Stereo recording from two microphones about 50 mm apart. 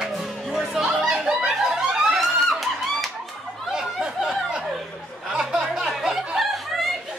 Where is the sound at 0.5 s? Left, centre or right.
Centre.